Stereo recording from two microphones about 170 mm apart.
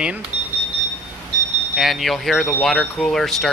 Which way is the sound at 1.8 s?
Centre (ahead or behind).